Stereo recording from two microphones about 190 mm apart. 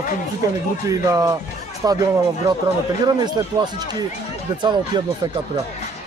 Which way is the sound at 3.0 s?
20° right (ahead or behind).